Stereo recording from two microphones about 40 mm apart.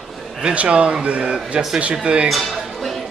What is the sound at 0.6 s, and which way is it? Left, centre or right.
A man's voice, right.